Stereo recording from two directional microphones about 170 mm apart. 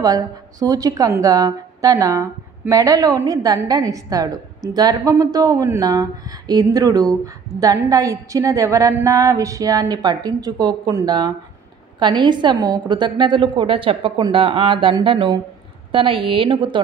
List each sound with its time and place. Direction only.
0.0 s a woman's voice: 20° right (ahead or behind)